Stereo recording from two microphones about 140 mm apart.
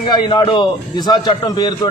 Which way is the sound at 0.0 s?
35° left (ahead or behind).